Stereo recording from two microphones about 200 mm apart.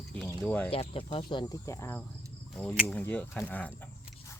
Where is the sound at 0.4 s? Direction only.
5° left (ahead or behind).